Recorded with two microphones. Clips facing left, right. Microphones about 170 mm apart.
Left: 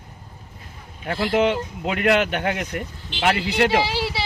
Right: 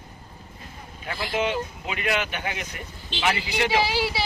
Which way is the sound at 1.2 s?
60° left (ahead or behind).